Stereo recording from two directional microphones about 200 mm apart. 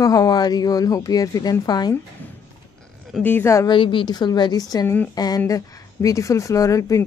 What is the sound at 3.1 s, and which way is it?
Speech, 10° left (ahead or behind).